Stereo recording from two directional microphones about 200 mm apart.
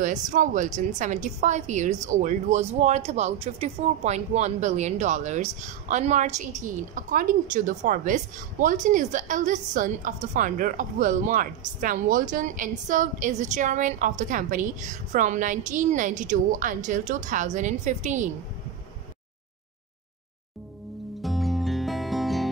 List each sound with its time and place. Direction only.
0.0 s a woman's voice: 40° right (ahead or behind)
21.2 s music: centre (ahead or behind)